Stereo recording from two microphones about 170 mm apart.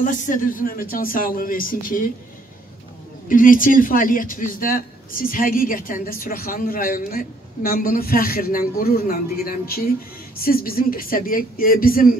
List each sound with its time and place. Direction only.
0.0 s speech: 50° left (ahead or behind)
3.3 s speech: 55° left (ahead or behind)